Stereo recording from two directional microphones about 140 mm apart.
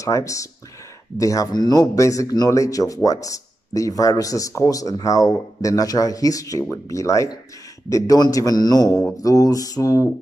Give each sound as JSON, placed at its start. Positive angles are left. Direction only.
{"t": 0.0, "sound": "a man's voice", "side_deg": 25}